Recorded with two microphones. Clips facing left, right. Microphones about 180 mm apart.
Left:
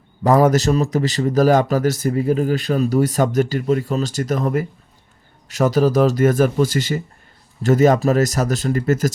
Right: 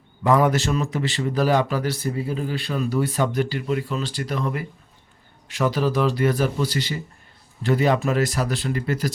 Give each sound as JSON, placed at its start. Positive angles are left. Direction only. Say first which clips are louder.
{"t": 0.2, "sound": "a man's voice", "louder": "left 4 dB", "side_deg": 40}